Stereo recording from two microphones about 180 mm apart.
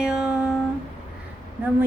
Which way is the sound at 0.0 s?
5° right (ahead or behind).